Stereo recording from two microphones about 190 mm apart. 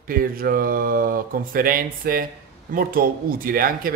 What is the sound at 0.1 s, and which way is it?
Speech, 50° right (ahead or behind).